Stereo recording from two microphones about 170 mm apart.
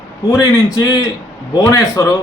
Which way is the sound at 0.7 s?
20° left (ahead or behind).